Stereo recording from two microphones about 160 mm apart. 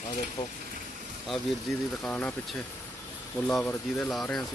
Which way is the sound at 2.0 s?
10° left (ahead or behind).